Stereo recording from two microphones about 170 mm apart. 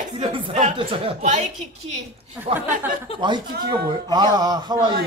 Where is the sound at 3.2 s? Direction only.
25° right (ahead or behind).